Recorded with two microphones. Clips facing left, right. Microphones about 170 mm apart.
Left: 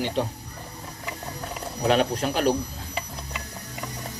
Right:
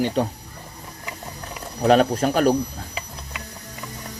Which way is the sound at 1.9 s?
45° right (ahead or behind).